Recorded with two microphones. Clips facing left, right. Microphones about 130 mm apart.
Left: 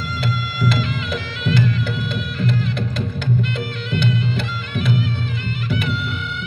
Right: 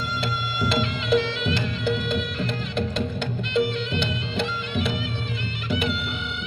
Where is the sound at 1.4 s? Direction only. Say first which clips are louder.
Left 5 dB; 25° right (ahead or behind).